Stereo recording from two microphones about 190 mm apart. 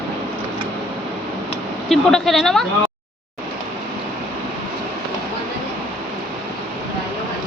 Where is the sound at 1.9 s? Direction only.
Centre (ahead or behind).